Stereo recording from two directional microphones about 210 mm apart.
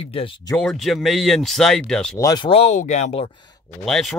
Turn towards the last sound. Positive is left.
turn(degrees=0)  # may be behind; listen again after turning